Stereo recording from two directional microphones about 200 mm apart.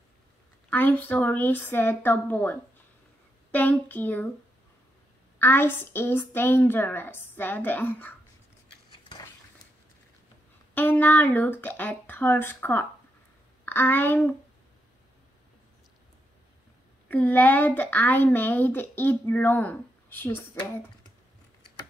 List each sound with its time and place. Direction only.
0.7 s a woman's voice: 10° left (ahead or behind)
3.5 s a woman's voice: 10° left (ahead or behind)
5.4 s a woman's voice: 10° left (ahead or behind)
10.7 s a woman's voice: 10° left (ahead or behind)
17.1 s a woman's voice: 10° left (ahead or behind)